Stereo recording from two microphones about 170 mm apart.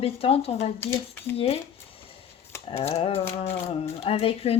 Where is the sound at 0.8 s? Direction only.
15° left (ahead or behind).